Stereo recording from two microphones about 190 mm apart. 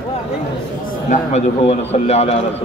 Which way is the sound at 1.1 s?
35° left (ahead or behind).